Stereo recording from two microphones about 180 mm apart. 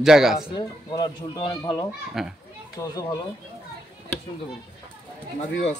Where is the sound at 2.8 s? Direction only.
20° left (ahead or behind).